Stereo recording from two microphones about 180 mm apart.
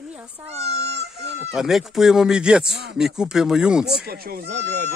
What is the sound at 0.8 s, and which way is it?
Speech, 70° right (ahead or behind).